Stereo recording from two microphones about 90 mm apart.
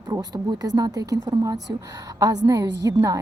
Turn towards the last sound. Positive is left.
turn(degrees=-40)  # may be behind; listen again after turning